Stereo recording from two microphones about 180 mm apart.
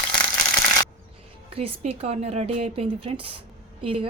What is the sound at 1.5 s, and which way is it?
Speech, 35° right (ahead or behind).